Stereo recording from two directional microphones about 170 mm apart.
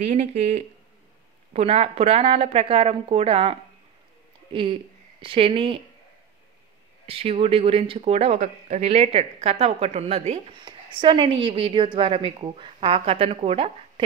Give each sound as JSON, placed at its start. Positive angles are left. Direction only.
{"t": 0.0, "sound": "speech", "side_deg": -40}
{"t": 7.1, "sound": "speech", "side_deg": -35}